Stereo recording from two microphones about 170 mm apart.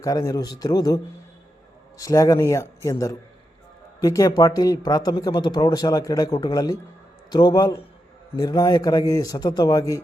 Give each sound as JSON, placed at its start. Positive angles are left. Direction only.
{"t": 0.0, "sound": "speech", "side_deg": 20}
{"t": 2.0, "sound": "speech", "side_deg": 20}